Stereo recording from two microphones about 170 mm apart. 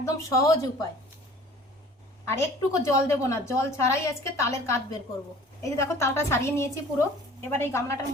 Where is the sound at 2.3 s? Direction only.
15° left (ahead or behind).